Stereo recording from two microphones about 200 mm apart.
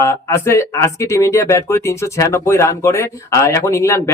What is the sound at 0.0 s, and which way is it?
Speech, 10° left (ahead or behind).